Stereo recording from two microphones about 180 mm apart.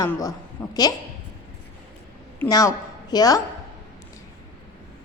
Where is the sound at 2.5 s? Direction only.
20° left (ahead or behind).